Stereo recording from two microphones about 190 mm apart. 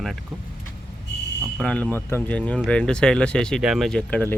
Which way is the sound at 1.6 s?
5° left (ahead or behind).